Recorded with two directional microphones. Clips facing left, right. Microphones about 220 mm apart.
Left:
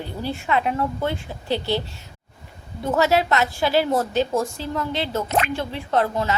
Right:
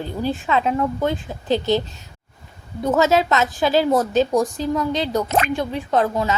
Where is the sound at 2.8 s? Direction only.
20° right (ahead or behind).